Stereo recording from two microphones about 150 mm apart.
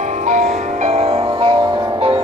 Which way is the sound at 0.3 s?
45° right (ahead or behind).